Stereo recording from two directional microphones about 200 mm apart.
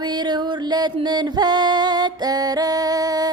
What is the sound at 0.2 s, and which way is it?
Music, 20° right (ahead or behind).